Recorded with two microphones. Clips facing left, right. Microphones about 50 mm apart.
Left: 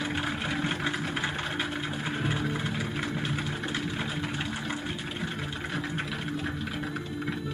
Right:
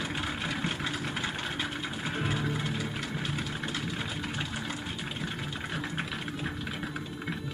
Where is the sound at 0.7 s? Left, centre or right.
Centre.